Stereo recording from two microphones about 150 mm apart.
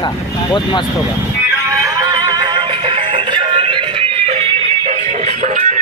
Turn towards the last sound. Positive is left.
turn(degrees=-55)  # may be behind; listen again after turning